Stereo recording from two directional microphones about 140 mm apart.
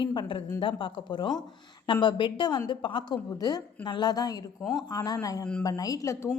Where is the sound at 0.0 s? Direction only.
35° left (ahead or behind).